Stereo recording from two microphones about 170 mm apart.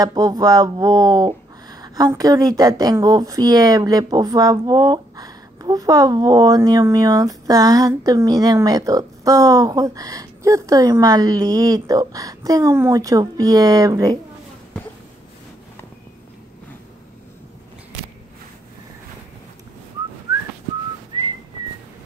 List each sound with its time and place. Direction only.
0.0 s speech: 20° right (ahead or behind)